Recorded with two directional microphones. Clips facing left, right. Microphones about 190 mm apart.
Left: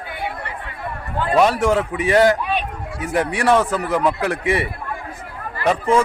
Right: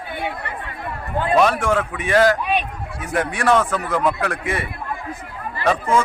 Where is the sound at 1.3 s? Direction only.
20° left (ahead or behind).